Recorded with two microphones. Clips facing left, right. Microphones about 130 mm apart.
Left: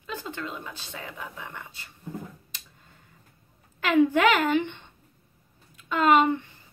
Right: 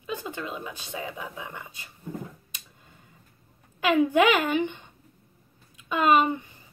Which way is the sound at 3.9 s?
20° right (ahead or behind).